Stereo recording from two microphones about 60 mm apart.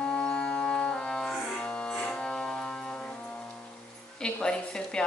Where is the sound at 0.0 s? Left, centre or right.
Centre.